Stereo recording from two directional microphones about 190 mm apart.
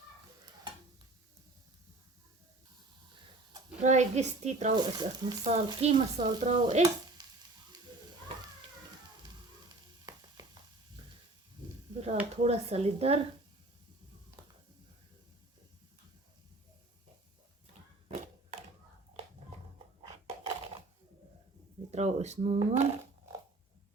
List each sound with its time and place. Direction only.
3.8 s stir: 40° right (ahead or behind)
4.8 s speech: 25° right (ahead or behind)
5.8 s stir: 35° right (ahead or behind)
10.1 s a sound: 20° right (ahead or behind)
11.9 s speech: 35° right (ahead or behind)
20.0 s a sound: 25° right (ahead or behind)
21.9 s speech: 35° right (ahead or behind)